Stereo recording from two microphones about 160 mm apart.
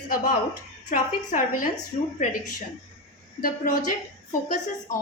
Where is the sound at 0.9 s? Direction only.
55° left (ahead or behind).